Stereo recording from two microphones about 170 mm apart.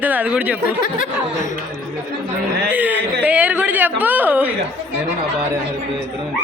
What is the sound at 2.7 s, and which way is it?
A man's voice, 10° right (ahead or behind).